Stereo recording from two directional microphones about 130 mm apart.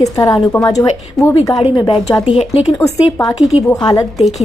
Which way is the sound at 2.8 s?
25° left (ahead or behind).